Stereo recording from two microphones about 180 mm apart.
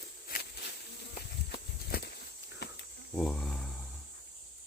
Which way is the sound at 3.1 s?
Centre (ahead or behind).